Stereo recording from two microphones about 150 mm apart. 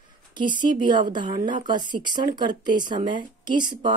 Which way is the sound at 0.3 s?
30° right (ahead or behind).